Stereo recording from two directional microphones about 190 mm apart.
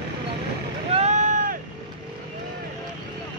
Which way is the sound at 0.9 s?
40° right (ahead or behind).